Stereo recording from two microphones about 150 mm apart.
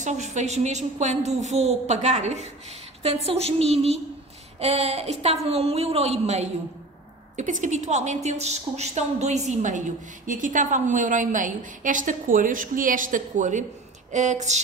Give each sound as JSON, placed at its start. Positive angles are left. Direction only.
{"t": 0.0, "sound": "a woman's voice", "side_deg": -50}